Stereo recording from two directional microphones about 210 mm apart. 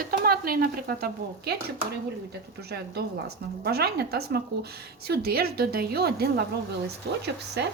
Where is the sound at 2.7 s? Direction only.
50° right (ahead or behind).